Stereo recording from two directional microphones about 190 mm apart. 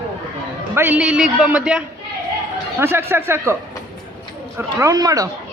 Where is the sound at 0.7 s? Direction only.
10° right (ahead or behind).